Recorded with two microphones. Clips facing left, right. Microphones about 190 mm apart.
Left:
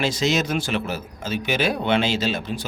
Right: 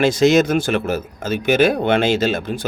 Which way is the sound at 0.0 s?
55° right (ahead or behind).